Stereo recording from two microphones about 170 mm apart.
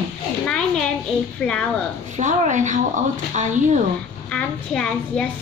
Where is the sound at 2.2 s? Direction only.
45° right (ahead or behind).